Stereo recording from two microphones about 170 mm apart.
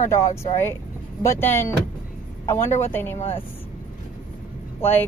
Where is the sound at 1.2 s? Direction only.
15° left (ahead or behind).